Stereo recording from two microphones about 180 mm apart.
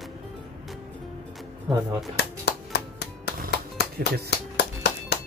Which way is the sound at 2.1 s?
65° left (ahead or behind).